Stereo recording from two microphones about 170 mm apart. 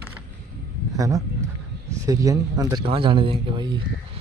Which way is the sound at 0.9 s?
20° right (ahead or behind).